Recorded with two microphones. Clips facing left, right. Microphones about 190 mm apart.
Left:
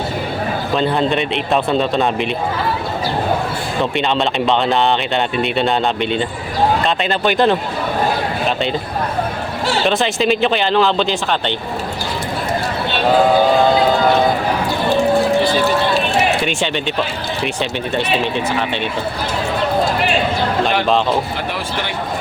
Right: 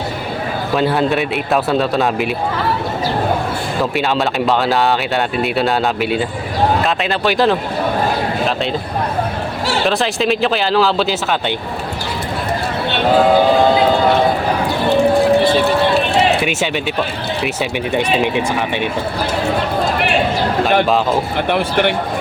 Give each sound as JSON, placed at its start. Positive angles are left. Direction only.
{"t": 0.8, "sound": "speech", "side_deg": -5}
{"t": 3.9, "sound": "speech", "side_deg": -5}
{"t": 9.8, "sound": "speech", "side_deg": 0}
{"t": 16.4, "sound": "speech", "side_deg": -5}
{"t": 21.5, "sound": "a man's voice", "side_deg": -60}